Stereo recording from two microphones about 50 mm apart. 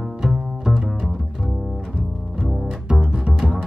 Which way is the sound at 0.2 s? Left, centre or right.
Centre.